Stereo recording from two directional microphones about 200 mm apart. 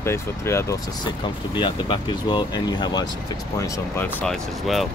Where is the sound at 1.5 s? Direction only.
25° left (ahead or behind).